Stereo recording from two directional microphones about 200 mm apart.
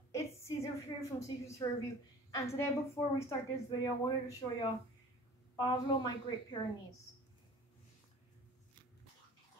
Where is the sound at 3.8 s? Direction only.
20° left (ahead or behind).